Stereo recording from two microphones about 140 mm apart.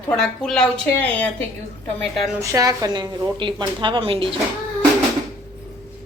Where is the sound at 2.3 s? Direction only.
25° right (ahead or behind); by 4.4 s 40° right (ahead or behind).